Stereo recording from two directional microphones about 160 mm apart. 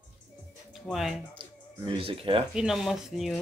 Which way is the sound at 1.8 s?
35° right (ahead or behind).